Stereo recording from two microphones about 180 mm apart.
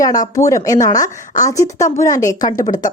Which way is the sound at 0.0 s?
20° left (ahead or behind).